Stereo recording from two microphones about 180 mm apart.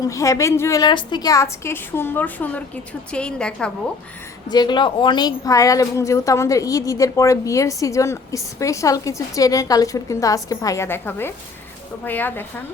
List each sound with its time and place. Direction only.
0.0 s a woman's voice: 15° left (ahead or behind)
4.4 s a woman's voice: 25° left (ahead or behind)